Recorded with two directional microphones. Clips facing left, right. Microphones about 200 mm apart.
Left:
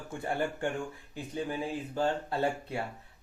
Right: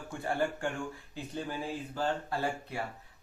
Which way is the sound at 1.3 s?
20° left (ahead or behind).